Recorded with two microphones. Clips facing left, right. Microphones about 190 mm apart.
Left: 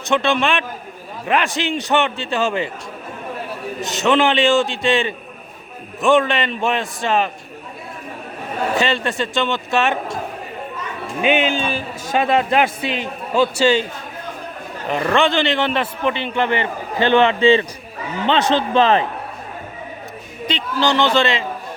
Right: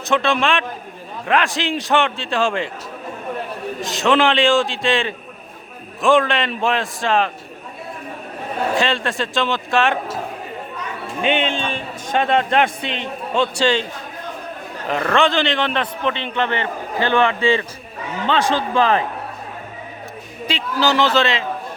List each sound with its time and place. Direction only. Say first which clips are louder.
0.0 s a man's voice: left 1 dB; centre (ahead or behind)
3.8 s a man's voice: even; centre (ahead or behind)
8.8 s a man's voice: left 1 dB; centre (ahead or behind)
11.2 s a man's voice: left 2 dB; 5° left (ahead or behind)
15.1 s a man's voice: left 1 dB; centre (ahead or behind); by 19.0 s 25° left (ahead or behind)
20.5 s a man's voice: even; 5° right (ahead or behind)